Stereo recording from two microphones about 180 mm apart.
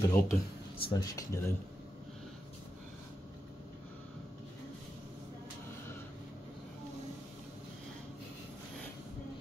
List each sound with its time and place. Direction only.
0.0 s speech: 15° left (ahead or behind)